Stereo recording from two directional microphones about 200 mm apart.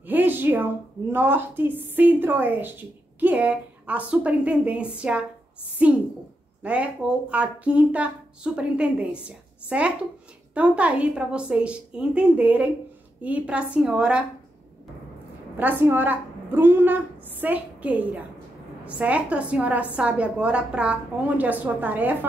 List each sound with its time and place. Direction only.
0.0 s a sound: 10° right (ahead or behind)
1.1 s a woman's voice: 10° right (ahead or behind)
15.8 s a woman's voice: 10° right (ahead or behind)